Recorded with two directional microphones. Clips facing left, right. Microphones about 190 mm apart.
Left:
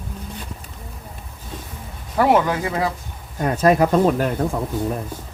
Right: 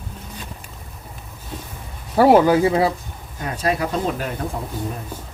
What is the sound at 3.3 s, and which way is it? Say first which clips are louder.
Speech: left 7 dB; 45° left (ahead or behind).